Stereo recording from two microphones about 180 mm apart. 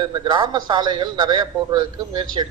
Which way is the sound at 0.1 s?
25° right (ahead or behind).